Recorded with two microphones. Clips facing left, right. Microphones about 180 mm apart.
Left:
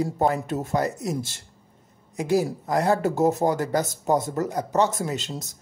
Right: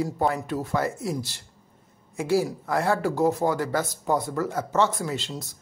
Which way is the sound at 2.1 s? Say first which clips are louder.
Left 1 dB; 20° left (ahead or behind).